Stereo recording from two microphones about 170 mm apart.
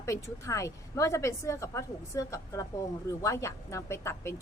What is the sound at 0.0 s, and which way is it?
A woman's voice, 15° left (ahead or behind).